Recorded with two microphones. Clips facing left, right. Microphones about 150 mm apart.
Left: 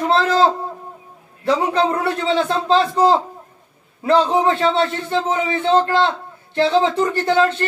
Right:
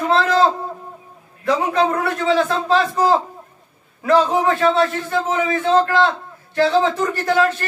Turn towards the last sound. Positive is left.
turn(degrees=25)  # may be behind; listen again after turning